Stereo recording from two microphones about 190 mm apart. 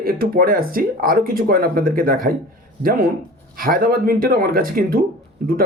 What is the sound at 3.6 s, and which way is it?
Speech, 50° right (ahead or behind).